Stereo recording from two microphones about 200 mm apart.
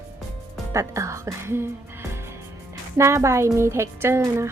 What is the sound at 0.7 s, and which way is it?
Speech, 15° right (ahead or behind).